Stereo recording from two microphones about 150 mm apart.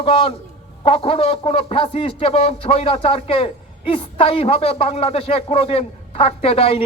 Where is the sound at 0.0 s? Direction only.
40° left (ahead or behind).